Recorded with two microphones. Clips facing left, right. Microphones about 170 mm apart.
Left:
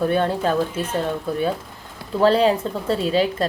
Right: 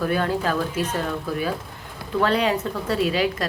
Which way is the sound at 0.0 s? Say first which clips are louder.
Left 3 dB; 25° left (ahead or behind).